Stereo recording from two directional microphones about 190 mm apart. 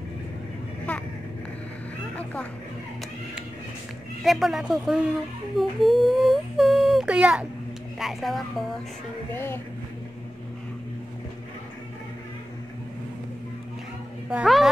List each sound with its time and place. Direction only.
0.9 s a sound: 5° left (ahead or behind)
4.2 s speech: centre (ahead or behind)
9.3 s speech: 10° left (ahead or behind)
14.3 s speech: centre (ahead or behind)